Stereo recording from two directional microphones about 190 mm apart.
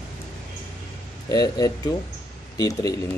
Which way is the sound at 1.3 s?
20° left (ahead or behind).